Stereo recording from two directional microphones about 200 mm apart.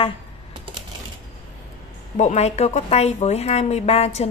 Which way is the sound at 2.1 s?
35° left (ahead or behind).